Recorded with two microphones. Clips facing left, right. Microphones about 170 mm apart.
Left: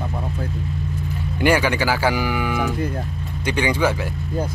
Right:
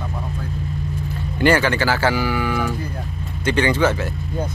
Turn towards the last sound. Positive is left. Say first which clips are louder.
# right 2 dB
turn(degrees=10)  # may be behind; listen again after turning